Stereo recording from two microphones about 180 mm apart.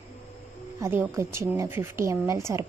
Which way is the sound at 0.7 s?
15° right (ahead or behind).